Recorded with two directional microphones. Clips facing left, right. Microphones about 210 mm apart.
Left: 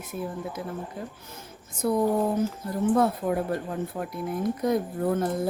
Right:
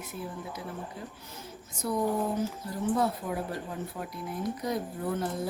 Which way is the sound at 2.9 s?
55° left (ahead or behind).